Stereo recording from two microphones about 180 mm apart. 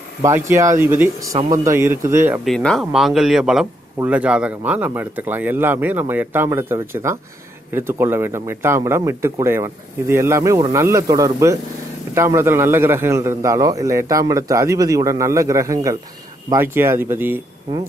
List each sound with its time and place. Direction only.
0.2 s a man's voice: 15° right (ahead or behind)
2.4 s a man's voice: 5° left (ahead or behind); by 17.4 s 10° right (ahead or behind)